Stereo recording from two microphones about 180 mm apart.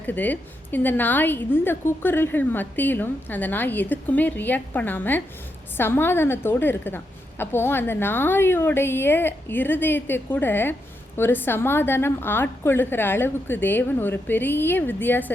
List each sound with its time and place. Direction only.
0.0 s a woman's voice: 10° left (ahead or behind)